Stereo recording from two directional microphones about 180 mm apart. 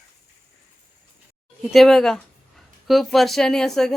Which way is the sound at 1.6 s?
Centre (ahead or behind).